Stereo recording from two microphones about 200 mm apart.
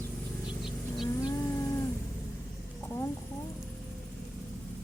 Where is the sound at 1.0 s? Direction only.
20° left (ahead or behind).